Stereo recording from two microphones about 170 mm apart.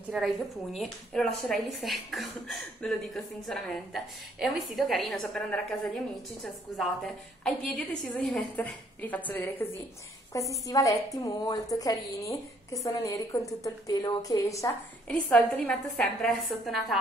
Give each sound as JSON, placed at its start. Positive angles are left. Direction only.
{"t": 0.1, "sound": "a woman's voice", "side_deg": 0}
{"t": 15.0, "sound": "a woman's voice", "side_deg": 10}